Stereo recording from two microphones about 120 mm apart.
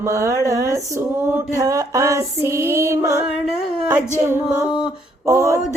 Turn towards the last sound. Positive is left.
turn(degrees=-25)  # may be behind; listen again after turning